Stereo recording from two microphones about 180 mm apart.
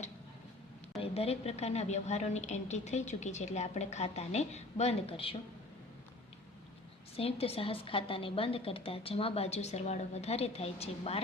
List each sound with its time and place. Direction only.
0.9 s a woman's voice: 35° left (ahead or behind)
7.2 s a woman's voice: 30° left (ahead or behind)